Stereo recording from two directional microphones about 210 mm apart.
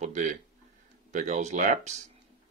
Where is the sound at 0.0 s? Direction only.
35° right (ahead or behind).